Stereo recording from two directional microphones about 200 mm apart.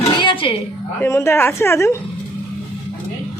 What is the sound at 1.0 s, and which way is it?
Speech, 15° left (ahead or behind).